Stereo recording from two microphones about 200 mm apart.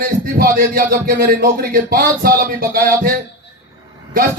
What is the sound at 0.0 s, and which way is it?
Speech, 45° right (ahead or behind).